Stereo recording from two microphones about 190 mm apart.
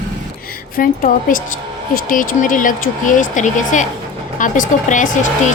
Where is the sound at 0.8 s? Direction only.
45° left (ahead or behind).